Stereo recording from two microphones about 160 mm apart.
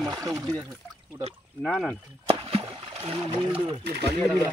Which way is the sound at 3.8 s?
90° right.